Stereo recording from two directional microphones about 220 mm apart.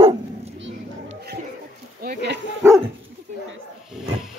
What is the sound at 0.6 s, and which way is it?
Music, 60° right (ahead or behind).